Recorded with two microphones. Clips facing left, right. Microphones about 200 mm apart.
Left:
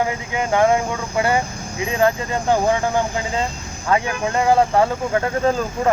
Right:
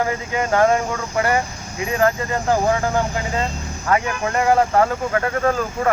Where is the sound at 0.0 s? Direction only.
15° left (ahead or behind).